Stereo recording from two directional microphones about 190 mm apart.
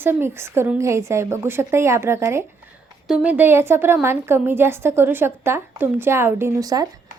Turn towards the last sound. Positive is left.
turn(degrees=-20)  # may be behind; listen again after turning